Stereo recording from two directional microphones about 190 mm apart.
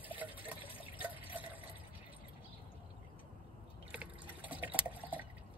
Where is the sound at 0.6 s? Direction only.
30° left (ahead or behind).